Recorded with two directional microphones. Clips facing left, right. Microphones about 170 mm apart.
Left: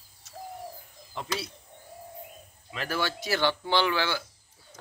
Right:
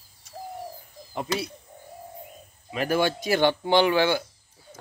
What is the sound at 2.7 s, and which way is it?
A man's voice, 15° right (ahead or behind).